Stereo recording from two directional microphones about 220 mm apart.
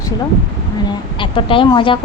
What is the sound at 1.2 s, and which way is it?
Speech, 25° left (ahead or behind).